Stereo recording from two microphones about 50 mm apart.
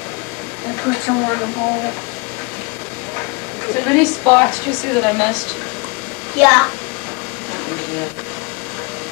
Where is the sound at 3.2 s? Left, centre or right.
Centre.